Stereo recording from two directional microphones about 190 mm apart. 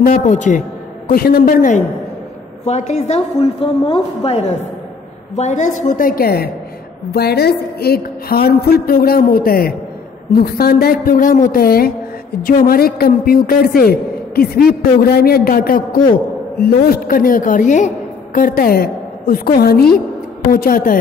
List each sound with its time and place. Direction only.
0.0 s a man's voice: 45° left (ahead or behind)
2.6 s a woman's voice: 35° left (ahead or behind)